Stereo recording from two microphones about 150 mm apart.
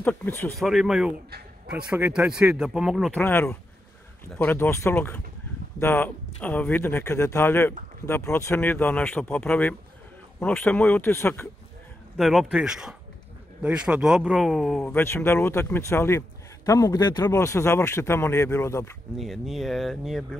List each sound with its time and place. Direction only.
0.0 s a man's voice: 10° left (ahead or behind)
0.6 s speech: centre (ahead or behind)
3.1 s a man's voice: 10° left (ahead or behind)
12.2 s speech: centre (ahead or behind)
14.9 s a man's voice: 15° left (ahead or behind)
19.1 s speech: centre (ahead or behind)